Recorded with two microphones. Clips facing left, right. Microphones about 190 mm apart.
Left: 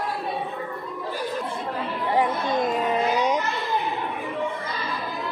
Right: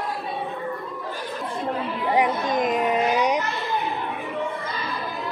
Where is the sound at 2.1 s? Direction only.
15° right (ahead or behind).